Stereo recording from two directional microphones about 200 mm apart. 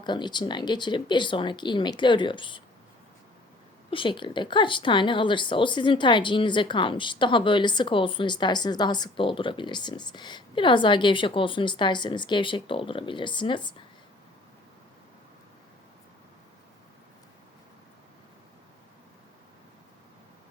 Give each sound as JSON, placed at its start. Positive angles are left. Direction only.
{"t": 0.0, "sound": "speech", "side_deg": 20}
{"t": 3.9, "sound": "speech", "side_deg": 25}